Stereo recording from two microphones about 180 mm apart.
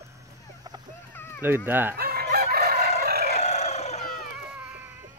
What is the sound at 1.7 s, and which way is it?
Fowl, 10° right (ahead or behind).